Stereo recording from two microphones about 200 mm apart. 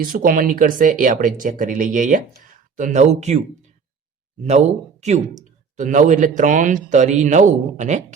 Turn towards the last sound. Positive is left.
turn(degrees=-35)  # may be behind; listen again after turning